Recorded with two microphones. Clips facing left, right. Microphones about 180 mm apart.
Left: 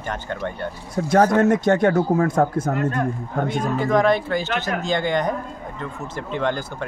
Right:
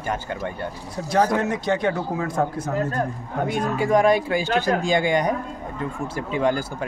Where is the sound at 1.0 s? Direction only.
50° left (ahead or behind).